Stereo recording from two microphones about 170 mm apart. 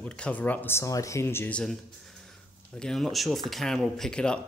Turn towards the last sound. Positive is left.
turn(degrees=5)  # may be behind; listen again after turning